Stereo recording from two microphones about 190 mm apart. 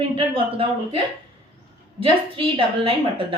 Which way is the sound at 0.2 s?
30° right (ahead or behind).